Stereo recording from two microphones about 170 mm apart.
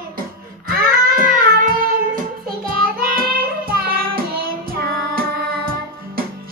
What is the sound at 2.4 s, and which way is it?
Child singing, 60° right (ahead or behind).